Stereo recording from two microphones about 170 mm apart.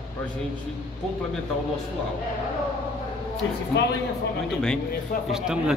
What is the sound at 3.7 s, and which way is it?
Speech, 90° left.